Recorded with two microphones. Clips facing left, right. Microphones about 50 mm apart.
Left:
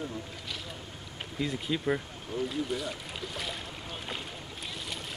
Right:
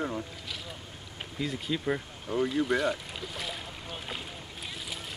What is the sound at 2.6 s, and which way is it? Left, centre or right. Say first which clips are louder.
Boat: right 6 dB; centre.